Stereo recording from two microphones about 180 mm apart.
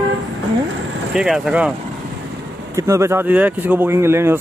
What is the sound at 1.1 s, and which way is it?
Speech, 5° right (ahead or behind).